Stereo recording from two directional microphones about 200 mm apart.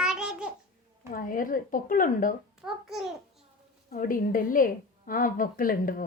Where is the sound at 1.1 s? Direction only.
45° left (ahead or behind).